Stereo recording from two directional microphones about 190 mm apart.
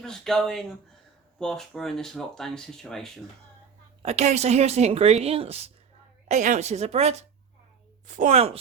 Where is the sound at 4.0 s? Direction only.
35° right (ahead or behind).